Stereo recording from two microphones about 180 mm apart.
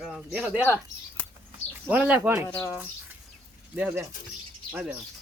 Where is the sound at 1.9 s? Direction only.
10° right (ahead or behind).